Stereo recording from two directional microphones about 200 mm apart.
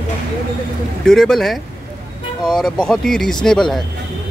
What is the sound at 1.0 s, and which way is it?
Speech, 5° left (ahead or behind).